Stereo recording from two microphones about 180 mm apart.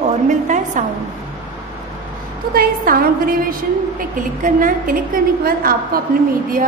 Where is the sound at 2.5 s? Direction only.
55° right (ahead or behind).